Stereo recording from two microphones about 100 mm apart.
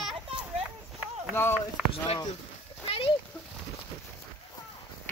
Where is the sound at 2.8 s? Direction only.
65° left (ahead or behind).